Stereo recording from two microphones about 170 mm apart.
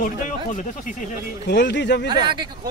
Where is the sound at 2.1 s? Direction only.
25° right (ahead or behind).